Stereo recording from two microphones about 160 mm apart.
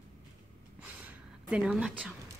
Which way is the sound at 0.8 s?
10° right (ahead or behind).